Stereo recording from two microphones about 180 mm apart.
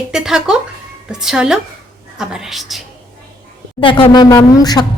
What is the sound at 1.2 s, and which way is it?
A woman's voice, 5° right (ahead or behind).